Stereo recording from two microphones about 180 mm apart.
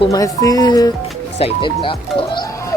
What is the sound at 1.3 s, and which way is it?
Speech, 30° left (ahead or behind).